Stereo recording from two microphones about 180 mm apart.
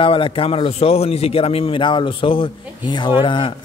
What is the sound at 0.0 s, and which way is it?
A man's voice, 30° left (ahead or behind).